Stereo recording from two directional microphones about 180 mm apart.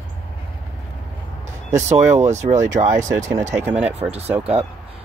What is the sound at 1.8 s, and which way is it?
Speech, 40° right (ahead or behind).